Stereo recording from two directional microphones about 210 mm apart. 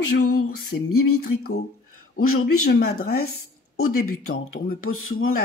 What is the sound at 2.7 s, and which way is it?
Speech, 50° left (ahead or behind).